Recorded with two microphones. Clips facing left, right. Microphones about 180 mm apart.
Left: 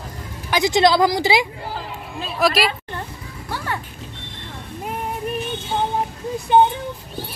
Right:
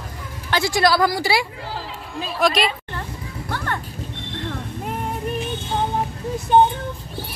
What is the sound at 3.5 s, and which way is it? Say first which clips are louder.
Music: even; 10° left (ahead or behind).